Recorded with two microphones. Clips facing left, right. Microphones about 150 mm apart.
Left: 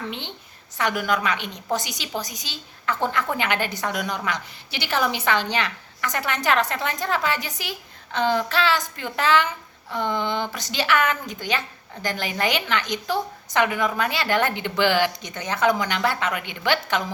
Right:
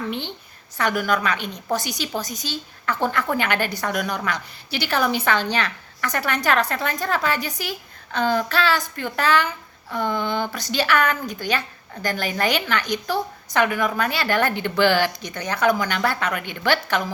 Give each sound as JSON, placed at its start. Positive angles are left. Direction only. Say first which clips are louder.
{"t": 0.8, "sound": "a woman's voice", "louder": "right 2 dB", "side_deg": 20}